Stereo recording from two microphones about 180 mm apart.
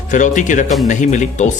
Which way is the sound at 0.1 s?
45° left (ahead or behind).